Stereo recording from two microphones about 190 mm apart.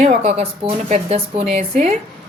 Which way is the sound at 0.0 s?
35° right (ahead or behind).